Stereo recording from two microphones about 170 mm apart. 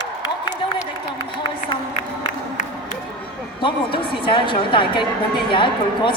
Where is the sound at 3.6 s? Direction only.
30° left (ahead or behind).